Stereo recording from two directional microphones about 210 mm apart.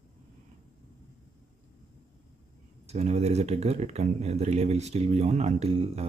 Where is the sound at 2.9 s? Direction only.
30° right (ahead or behind).